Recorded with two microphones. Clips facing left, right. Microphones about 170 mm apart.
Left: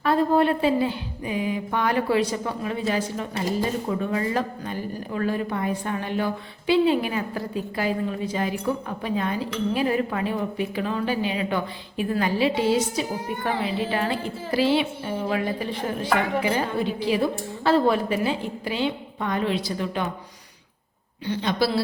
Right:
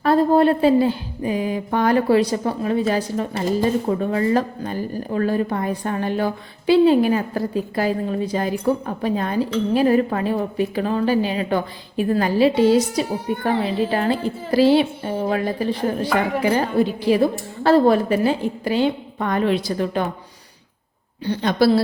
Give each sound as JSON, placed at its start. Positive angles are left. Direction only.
{"t": 0.0, "sound": "a woman's voice", "side_deg": -35}
{"t": 21.2, "sound": "a woman's voice", "side_deg": -45}